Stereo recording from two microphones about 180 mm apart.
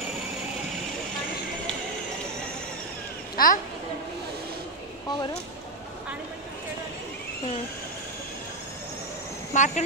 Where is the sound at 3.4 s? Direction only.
55° left (ahead or behind).